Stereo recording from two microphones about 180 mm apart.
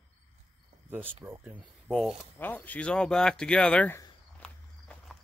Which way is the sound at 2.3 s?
10° left (ahead or behind).